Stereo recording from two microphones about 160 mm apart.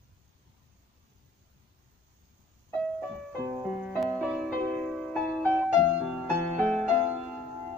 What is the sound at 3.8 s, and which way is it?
Music, centre (ahead or behind).